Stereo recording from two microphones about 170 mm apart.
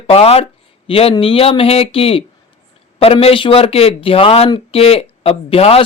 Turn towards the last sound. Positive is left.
turn(degrees=35)  # may be behind; listen again after turning